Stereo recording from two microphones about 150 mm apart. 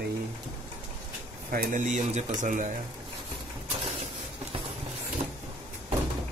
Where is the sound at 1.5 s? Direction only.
65° right (ahead or behind).